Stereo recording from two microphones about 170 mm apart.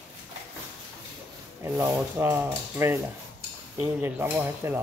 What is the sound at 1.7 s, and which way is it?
Speech, 10° right (ahead or behind).